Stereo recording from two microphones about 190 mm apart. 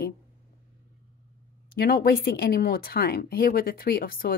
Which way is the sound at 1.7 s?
50° left (ahead or behind).